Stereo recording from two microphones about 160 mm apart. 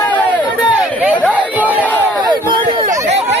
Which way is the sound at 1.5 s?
10° right (ahead or behind).